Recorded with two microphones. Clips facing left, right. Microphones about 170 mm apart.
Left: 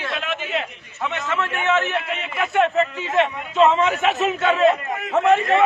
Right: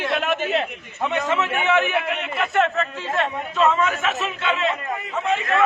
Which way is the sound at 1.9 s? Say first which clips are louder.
Right 1 dB; centre (ahead or behind).